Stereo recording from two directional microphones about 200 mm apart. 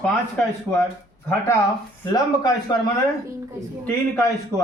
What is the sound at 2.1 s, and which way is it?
Speech, 20° left (ahead or behind).